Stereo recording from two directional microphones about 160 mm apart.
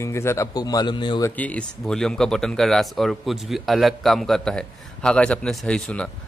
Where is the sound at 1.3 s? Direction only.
10° left (ahead or behind).